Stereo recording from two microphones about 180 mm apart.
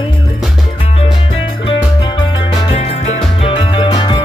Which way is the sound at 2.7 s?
35° left (ahead or behind).